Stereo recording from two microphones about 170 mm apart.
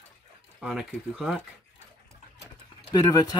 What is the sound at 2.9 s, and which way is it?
Speech, 20° left (ahead or behind).